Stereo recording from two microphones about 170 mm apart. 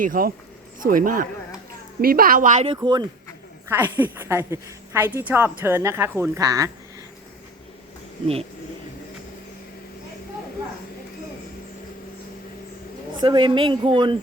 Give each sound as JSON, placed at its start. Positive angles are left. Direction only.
{"t": 0.0, "sound": "a woman's voice", "side_deg": -55}
{"t": 2.6, "sound": "speech", "side_deg": -25}
{"t": 3.7, "sound": "a woman's voice", "side_deg": -10}
{"t": 13.1, "sound": "speech", "side_deg": -30}